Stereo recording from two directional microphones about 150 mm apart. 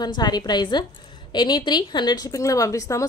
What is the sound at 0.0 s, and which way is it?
A woman's voice, 30° left (ahead or behind).